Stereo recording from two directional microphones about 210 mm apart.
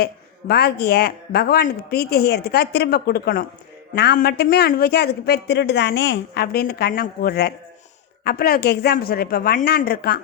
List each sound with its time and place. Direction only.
0.0 s a man's voice: 45° left (ahead or behind)